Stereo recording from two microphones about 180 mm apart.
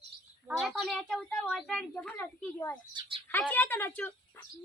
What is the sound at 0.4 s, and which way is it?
A woman's voice, centre (ahead or behind).